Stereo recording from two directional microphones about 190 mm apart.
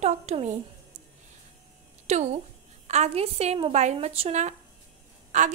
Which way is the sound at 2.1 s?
35° right (ahead or behind).